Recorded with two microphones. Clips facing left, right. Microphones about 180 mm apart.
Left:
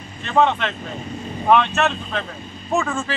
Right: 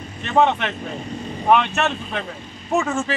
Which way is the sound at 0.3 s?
15° right (ahead or behind).